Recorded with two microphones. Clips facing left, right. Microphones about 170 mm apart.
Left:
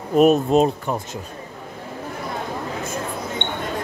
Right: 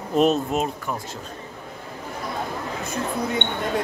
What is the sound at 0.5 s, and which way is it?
Speech, 30° left (ahead or behind).